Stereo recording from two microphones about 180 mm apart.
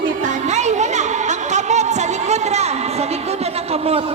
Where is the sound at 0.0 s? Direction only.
45° right (ahead or behind).